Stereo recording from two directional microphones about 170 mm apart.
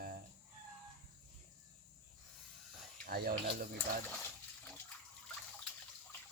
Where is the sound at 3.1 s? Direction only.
60° right (ahead or behind).